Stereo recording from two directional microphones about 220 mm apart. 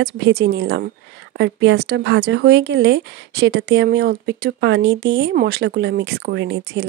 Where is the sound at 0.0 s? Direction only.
50° right (ahead or behind).